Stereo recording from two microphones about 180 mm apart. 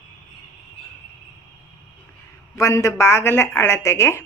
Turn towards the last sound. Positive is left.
turn(degrees=15)  # may be behind; listen again after turning